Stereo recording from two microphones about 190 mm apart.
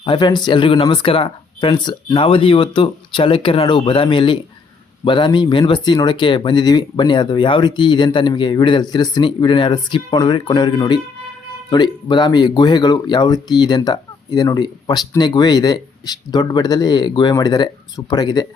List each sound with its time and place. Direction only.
0.0 s speech: 25° left (ahead or behind)